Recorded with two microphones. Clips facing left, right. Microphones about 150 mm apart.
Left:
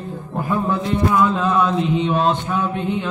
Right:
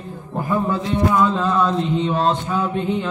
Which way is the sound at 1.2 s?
5° left (ahead or behind).